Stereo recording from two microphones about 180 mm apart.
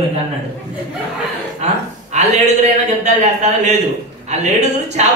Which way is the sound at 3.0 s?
40° right (ahead or behind).